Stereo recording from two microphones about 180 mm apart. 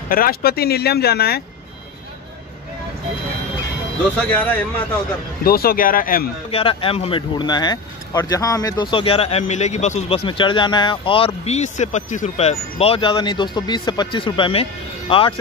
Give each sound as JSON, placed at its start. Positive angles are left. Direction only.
{"t": 0.1, "sound": "speech", "side_deg": 55}
{"t": 4.3, "sound": "a man's voice", "side_deg": 10}
{"t": 5.4, "sound": "speech", "side_deg": 55}
{"t": 6.5, "sound": "speech", "side_deg": 30}